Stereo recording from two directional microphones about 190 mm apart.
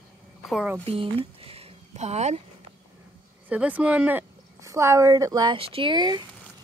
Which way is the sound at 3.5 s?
10° right (ahead or behind).